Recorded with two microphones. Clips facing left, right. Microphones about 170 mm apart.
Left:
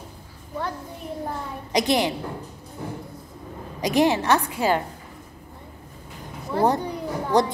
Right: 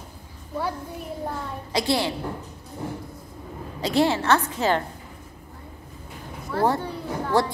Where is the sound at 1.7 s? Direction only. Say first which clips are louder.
Left 2 dB; 20° left (ahead or behind).